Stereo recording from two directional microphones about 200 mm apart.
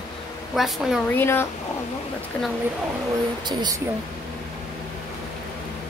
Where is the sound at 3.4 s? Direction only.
20° right (ahead or behind).